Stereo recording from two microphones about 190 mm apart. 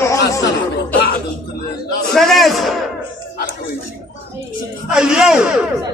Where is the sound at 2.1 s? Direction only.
Centre (ahead or behind).